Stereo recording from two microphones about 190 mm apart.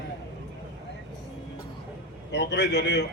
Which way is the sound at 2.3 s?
65° left (ahead or behind).